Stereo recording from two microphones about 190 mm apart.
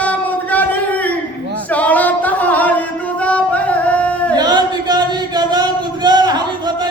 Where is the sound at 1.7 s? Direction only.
10° left (ahead or behind).